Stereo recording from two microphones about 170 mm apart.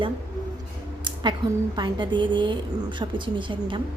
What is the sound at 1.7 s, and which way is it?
A woman's voice, 25° right (ahead or behind).